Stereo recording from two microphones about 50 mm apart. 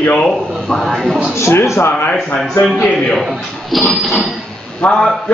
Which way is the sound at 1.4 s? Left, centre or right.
Left.